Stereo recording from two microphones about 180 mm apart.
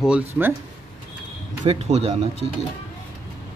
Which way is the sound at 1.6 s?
35° right (ahead or behind).